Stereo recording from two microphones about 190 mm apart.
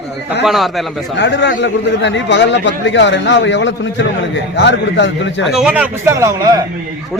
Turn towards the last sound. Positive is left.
turn(degrees=-15)  # may be behind; listen again after turning